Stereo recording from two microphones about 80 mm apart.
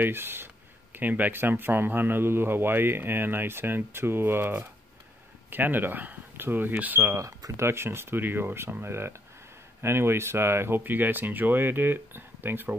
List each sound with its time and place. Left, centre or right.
0.0 s a man's voice: right
7.2 s a man's voice: right